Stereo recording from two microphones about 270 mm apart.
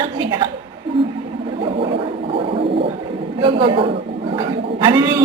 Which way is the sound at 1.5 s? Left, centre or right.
Right.